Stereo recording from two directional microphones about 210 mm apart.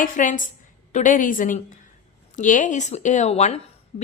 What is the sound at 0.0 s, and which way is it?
A woman's voice, 40° left (ahead or behind).